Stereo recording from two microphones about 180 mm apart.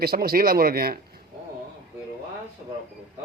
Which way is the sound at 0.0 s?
55° right (ahead or behind).